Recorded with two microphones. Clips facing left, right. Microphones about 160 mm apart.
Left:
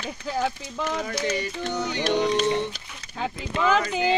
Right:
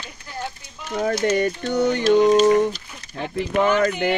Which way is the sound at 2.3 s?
45° right (ahead or behind).